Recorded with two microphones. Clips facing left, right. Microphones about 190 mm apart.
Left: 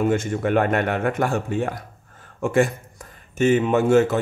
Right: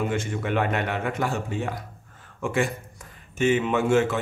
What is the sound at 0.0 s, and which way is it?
Speech, 45° left (ahead or behind).